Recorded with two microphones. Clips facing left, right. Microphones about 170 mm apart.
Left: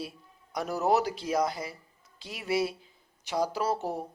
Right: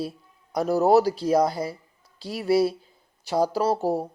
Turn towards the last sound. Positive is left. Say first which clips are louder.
# right 7 dB
turn(degrees=-35)  # may be behind; listen again after turning